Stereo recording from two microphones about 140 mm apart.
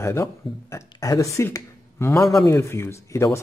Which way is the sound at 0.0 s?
20° left (ahead or behind).